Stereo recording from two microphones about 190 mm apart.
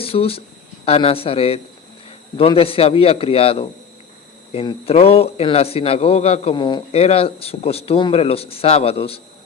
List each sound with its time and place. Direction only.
0.0 s speech: 30° left (ahead or behind)